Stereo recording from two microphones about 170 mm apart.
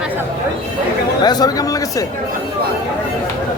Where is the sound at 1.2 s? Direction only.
25° left (ahead or behind).